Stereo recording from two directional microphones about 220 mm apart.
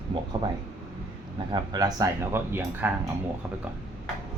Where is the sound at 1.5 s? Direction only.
15° right (ahead or behind).